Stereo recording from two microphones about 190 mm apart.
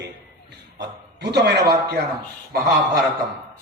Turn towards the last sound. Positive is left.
turn(degrees=-50)  # may be behind; listen again after turning